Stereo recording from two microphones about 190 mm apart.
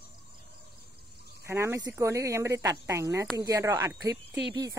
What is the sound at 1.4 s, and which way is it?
Speech, 15° right (ahead or behind).